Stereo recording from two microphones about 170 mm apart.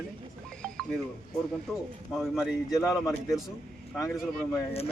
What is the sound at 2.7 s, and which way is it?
Speech, 20° left (ahead or behind).